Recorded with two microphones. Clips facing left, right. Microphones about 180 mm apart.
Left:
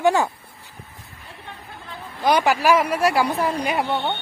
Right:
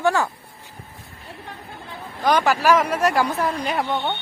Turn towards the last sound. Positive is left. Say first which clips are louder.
# left 1 dB
turn(degrees=10)  # may be behind; listen again after turning